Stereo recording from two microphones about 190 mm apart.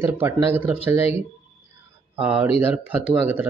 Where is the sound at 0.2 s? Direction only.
10° right (ahead or behind).